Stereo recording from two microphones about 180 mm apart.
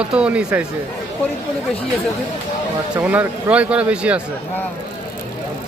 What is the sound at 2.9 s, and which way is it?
Speech, 10° right (ahead or behind).